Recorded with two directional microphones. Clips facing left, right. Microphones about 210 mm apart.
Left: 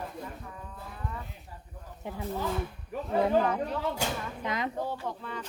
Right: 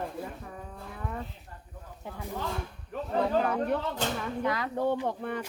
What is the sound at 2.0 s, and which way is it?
Speech, 20° left (ahead or behind).